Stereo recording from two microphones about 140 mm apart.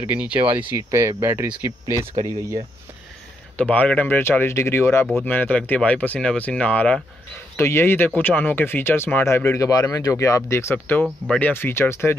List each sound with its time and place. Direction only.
0.0 s speech: 10° right (ahead or behind)
3.5 s speech: 10° left (ahead or behind)